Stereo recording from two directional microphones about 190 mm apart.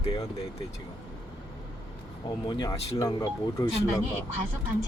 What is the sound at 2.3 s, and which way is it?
Speech, 20° left (ahead or behind).